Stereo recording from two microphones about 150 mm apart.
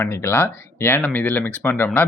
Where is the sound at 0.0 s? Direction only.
15° left (ahead or behind).